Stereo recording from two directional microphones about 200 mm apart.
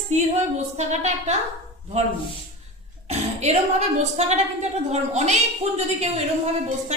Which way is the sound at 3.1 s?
35° right (ahead or behind).